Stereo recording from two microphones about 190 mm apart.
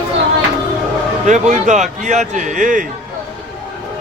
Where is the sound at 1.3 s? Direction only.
40° right (ahead or behind).